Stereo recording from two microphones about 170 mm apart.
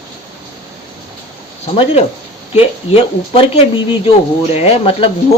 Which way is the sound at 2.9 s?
35° left (ahead or behind).